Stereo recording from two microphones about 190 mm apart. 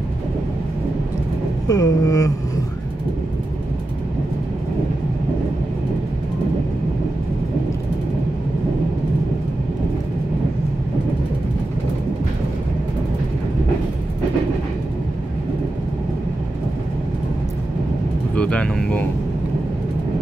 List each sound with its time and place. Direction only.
1.7 s mantra: 20° left (ahead or behind)
18.3 s vehicle: 5° left (ahead or behind)